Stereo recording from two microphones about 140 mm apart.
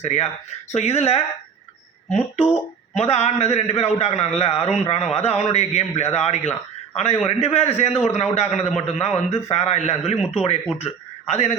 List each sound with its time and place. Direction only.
0.0 s a man's voice: 55° left (ahead or behind)